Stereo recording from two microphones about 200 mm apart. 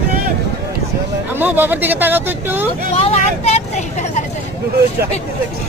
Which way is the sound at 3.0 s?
30° left (ahead or behind).